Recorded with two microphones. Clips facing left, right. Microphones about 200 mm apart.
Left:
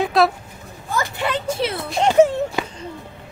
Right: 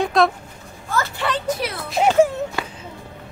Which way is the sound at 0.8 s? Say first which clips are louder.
Even; 15° left (ahead or behind).